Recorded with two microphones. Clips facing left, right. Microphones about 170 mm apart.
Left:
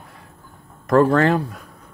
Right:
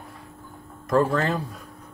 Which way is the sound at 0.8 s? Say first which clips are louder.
Left 6 dB; 65° left (ahead or behind).